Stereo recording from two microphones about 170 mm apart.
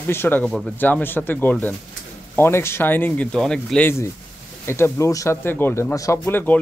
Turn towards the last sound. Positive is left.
turn(degrees=10)  # may be behind; listen again after turning